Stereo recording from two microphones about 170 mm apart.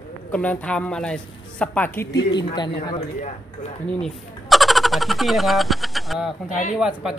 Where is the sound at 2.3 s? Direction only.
25° left (ahead or behind).